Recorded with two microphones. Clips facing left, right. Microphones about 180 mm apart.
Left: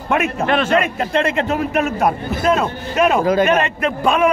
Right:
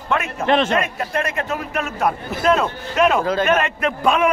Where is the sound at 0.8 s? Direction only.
25° left (ahead or behind).